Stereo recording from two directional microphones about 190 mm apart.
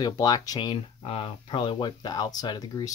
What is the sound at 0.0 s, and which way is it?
Speech, 20° left (ahead or behind).